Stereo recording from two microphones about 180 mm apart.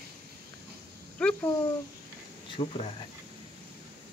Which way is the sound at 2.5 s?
30° left (ahead or behind).